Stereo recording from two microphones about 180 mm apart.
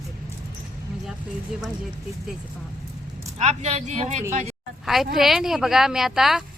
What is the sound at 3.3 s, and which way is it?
Speech, 35° right (ahead or behind).